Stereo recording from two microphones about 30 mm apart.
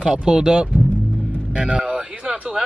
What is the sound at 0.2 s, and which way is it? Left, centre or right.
Speech, right.